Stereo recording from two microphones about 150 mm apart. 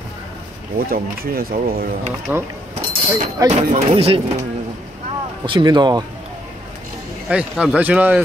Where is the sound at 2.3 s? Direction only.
10° right (ahead or behind).